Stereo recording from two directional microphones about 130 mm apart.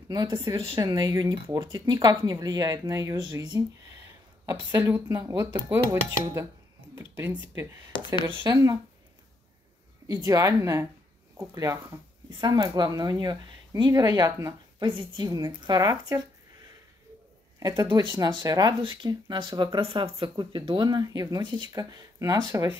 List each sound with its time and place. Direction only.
0.1 s speech: 35° right (ahead or behind)
4.7 s speech: 20° right (ahead or behind)
8.5 s speech: 25° right (ahead or behind)
10.0 s speech: 25° right (ahead or behind)
17.6 s speech: 25° right (ahead or behind)